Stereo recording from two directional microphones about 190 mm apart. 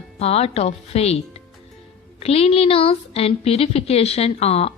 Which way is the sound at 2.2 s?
30° left (ahead or behind).